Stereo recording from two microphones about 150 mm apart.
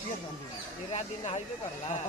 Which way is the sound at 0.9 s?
45° left (ahead or behind).